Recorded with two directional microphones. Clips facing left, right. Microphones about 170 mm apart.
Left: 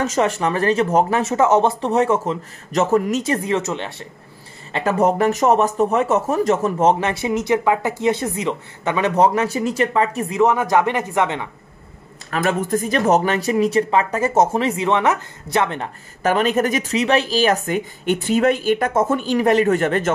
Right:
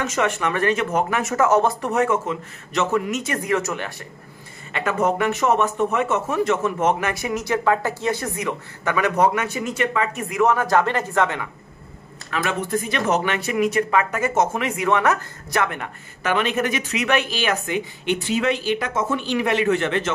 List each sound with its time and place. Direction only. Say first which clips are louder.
0.0 s speech: left 3 dB; 35° left (ahead or behind)
4.7 s speech: left 4 dB; 35° left (ahead or behind)
10.4 s speech: left 2 dB; 20° left (ahead or behind)
12.3 s speech: left 4 dB; 40° left (ahead or behind)